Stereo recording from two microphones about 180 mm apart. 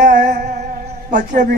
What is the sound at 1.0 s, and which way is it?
Speech, 45° right (ahead or behind).